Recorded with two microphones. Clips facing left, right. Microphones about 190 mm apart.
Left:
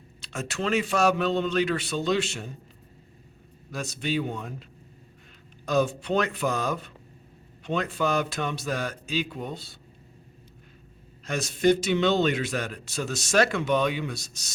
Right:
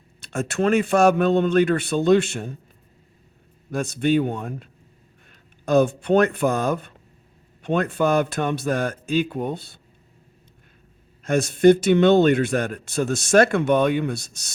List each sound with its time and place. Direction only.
0.2 s a man's voice: 55° right (ahead or behind)
3.7 s a man's voice: 55° right (ahead or behind)
11.3 s a man's voice: 55° right (ahead or behind)